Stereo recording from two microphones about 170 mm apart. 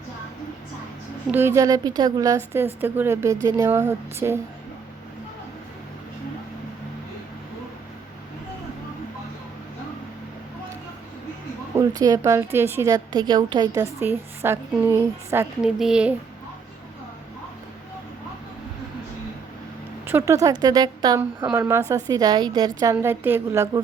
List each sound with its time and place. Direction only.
1.3 s a woman's voice: 15° right (ahead or behind)
11.7 s a woman's voice: 20° right (ahead or behind); by 16.1 s 5° right (ahead or behind)
20.1 s a woman's voice: 15° right (ahead or behind)
21.2 s a woman's voice: 10° right (ahead or behind)